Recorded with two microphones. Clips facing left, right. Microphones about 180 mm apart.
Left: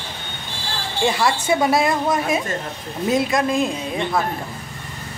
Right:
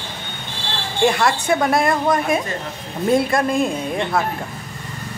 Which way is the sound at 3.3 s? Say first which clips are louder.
Right 1 dB; centre (ahead or behind).